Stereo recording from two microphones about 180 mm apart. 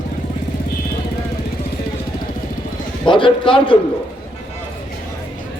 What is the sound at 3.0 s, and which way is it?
Speech, 25° left (ahead or behind).